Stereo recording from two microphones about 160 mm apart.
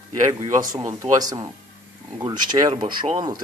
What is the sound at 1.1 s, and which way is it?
Speech, 25° right (ahead or behind).